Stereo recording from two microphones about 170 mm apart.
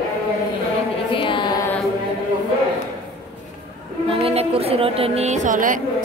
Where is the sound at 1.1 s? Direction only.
30° left (ahead or behind).